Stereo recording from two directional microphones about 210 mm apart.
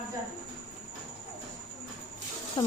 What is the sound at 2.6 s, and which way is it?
Insect, 20° left (ahead or behind).